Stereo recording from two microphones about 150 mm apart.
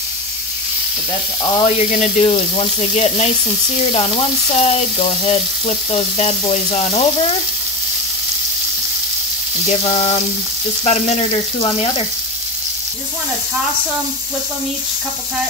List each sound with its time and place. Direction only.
1.6 s frying: 50° left (ahead or behind)
3.9 s frying: 40° left (ahead or behind)
9.7 s frying: 45° left (ahead or behind)